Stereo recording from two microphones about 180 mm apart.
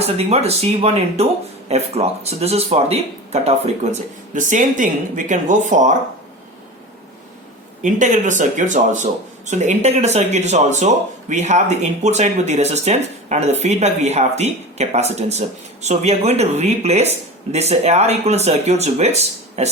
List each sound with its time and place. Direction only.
0.2 s speech: 35° right (ahead or behind)
7.8 s speech: 45° right (ahead or behind)